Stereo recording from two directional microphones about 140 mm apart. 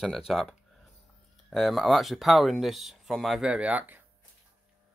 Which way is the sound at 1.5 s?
Centre (ahead or behind).